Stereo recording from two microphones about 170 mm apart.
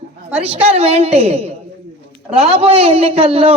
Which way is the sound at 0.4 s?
35° right (ahead or behind).